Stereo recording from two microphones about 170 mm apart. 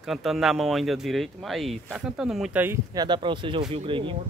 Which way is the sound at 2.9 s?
25° right (ahead or behind).